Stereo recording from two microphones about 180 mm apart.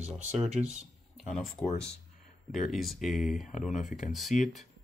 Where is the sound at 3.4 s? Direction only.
45° left (ahead or behind).